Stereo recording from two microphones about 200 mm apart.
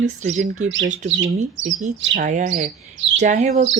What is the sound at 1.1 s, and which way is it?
Speech, 65° right (ahead or behind).